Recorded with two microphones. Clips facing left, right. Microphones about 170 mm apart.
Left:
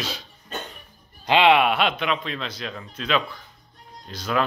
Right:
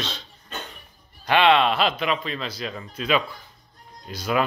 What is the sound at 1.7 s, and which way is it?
Speech, centre (ahead or behind).